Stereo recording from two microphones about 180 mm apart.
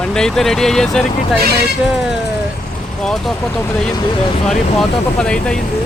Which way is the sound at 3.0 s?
Centre (ahead or behind).